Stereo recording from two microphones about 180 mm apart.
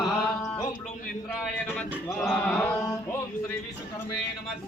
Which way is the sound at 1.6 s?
5° left (ahead or behind).